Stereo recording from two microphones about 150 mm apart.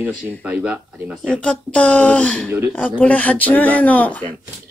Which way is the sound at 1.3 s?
5° left (ahead or behind).